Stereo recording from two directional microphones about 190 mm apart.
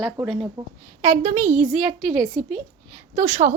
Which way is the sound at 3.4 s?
40° right (ahead or behind).